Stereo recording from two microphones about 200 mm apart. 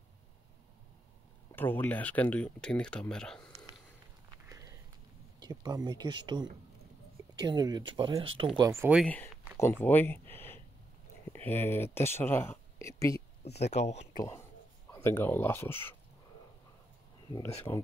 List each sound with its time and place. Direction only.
1.5 s speech: 10° left (ahead or behind)
4.5 s sniff: 15° right (ahead or behind)
5.4 s speech: 20° right (ahead or behind)
8.9 s speech: 5° left (ahead or behind)
13.4 s speech: 35° left (ahead or behind)
14.1 s speech: 15° left (ahead or behind)
17.7 s speech: 15° left (ahead or behind)